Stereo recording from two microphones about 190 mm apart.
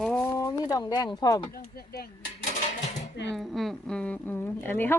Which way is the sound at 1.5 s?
50° left (ahead or behind).